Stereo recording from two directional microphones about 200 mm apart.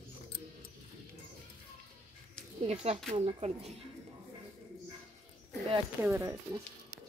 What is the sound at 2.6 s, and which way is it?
A woman's voice, 30° right (ahead or behind).